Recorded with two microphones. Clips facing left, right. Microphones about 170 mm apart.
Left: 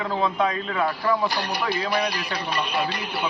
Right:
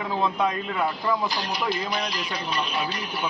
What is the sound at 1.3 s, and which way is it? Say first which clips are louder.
Speech: left 1 dB; 65° left (ahead or behind).